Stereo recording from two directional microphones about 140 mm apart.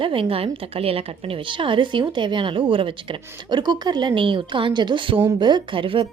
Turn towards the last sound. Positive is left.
turn(degrees=-40)  # may be behind; listen again after turning